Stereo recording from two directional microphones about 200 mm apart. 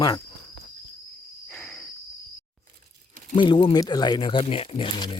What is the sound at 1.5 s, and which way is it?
Cricket, 5° left (ahead or behind).